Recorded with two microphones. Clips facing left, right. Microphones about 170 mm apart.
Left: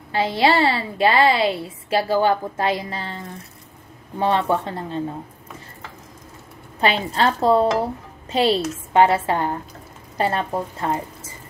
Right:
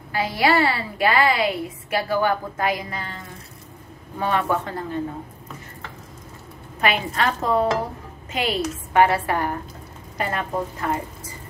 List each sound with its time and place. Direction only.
0.1 s a woman's voice: 25° left (ahead or behind)
4.2 s a woman's voice: 25° left (ahead or behind)
6.8 s a woman's voice: 30° left (ahead or behind)